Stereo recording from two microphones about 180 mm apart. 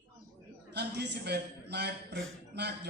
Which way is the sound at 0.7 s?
70° right (ahead or behind).